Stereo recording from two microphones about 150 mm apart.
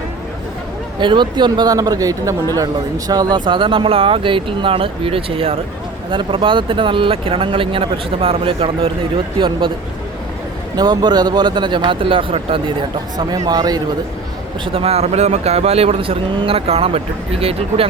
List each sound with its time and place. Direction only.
0.9 s speech: 30° right (ahead or behind)
10.8 s speech: 30° right (ahead or behind)
13.1 s speech: 25° right (ahead or behind)
14.6 s speech: 40° right (ahead or behind)